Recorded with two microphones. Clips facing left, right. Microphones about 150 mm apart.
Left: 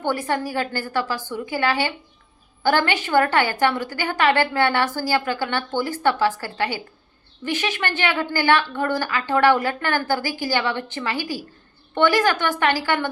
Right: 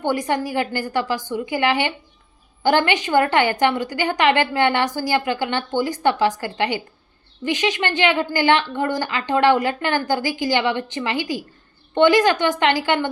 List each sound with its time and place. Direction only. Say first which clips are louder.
0.0 s a woman's voice: right 2 dB; 15° right (ahead or behind)